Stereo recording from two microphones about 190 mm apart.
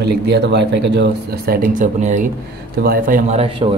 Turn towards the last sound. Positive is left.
turn(degrees=-30)  # may be behind; listen again after turning